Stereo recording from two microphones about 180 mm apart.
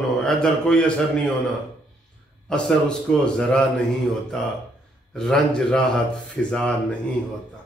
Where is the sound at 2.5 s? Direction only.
5° left (ahead or behind).